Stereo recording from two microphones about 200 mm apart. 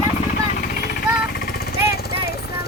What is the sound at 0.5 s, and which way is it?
Jackhammer, 50° left (ahead or behind).